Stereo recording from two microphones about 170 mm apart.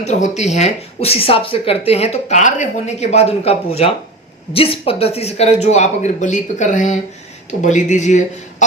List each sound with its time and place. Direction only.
0.0 s speech: 40° left (ahead or behind)